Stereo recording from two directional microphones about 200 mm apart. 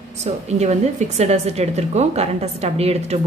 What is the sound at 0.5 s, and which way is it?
A woman's voice, 35° right (ahead or behind).